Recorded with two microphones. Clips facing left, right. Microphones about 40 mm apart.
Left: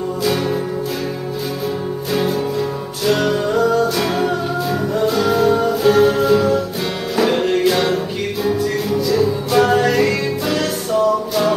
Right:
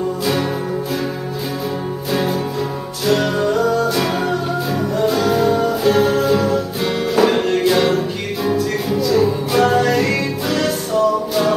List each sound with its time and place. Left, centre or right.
0.2 s music: centre
3.1 s music: centre